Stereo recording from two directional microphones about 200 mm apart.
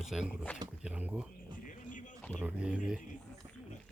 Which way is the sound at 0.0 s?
Centre (ahead or behind).